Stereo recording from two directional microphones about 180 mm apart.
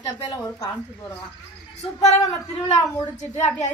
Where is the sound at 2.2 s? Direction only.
20° left (ahead or behind).